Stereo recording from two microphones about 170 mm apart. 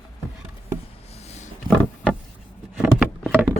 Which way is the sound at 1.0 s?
40° left (ahead or behind).